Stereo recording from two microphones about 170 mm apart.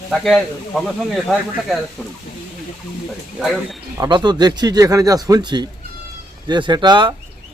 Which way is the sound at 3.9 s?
25° right (ahead or behind).